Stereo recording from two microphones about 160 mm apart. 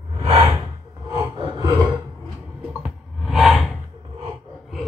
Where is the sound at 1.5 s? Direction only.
25° right (ahead or behind).